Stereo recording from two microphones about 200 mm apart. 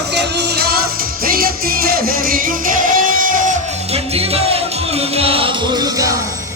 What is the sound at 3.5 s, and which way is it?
Music, 30° right (ahead or behind).